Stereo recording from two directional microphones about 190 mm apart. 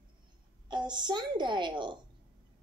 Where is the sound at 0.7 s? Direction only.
25° right (ahead or behind).